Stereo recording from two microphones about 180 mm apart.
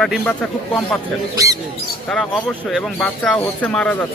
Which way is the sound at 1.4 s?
20° right (ahead or behind).